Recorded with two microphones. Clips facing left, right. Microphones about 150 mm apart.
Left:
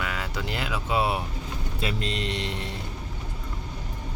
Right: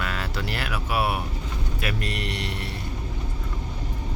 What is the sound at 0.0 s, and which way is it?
Speech, 15° left (ahead or behind).